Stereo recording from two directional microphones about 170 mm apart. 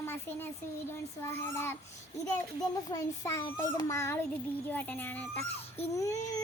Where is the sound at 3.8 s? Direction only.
15° left (ahead or behind).